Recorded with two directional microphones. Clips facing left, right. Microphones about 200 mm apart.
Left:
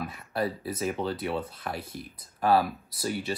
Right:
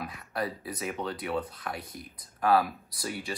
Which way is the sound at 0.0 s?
25° left (ahead or behind).